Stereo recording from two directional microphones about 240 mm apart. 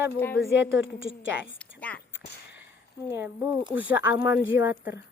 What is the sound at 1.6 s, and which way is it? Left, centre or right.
Speech, centre.